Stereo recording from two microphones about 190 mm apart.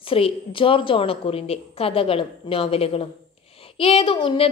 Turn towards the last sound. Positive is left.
turn(degrees=25)  # may be behind; listen again after turning